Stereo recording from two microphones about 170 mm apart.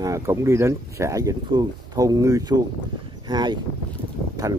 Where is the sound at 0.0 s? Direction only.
20° right (ahead or behind).